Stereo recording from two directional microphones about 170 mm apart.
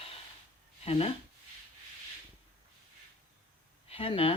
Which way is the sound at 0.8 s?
35° left (ahead or behind).